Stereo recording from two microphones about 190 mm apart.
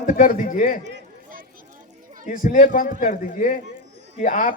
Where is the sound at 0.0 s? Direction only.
45° left (ahead or behind).